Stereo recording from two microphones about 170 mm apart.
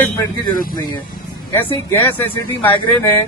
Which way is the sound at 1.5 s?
15° left (ahead or behind).